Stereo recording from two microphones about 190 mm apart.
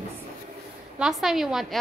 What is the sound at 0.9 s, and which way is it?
Speech, centre (ahead or behind).